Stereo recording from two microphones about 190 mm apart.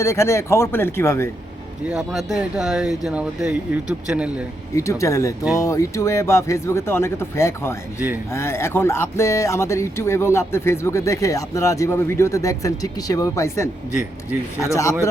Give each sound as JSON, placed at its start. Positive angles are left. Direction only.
{"t": 0.0, "sound": "speech", "side_deg": 15}
{"t": 1.9, "sound": "speech", "side_deg": -5}
{"t": 4.7, "sound": "speech", "side_deg": 15}